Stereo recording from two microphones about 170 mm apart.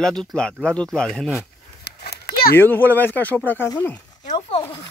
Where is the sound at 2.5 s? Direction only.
10° left (ahead or behind).